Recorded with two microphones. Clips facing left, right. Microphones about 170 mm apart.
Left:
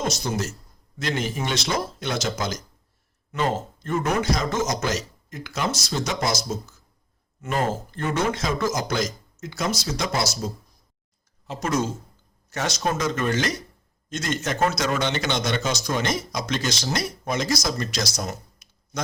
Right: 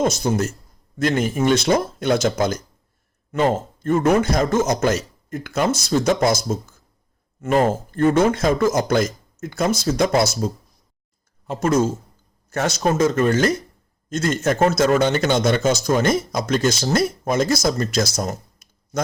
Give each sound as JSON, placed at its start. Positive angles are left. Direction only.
{"t": 0.0, "sound": "speech", "side_deg": -50}